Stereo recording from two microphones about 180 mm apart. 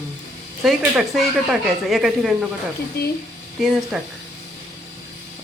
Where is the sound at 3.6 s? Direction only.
Centre (ahead or behind).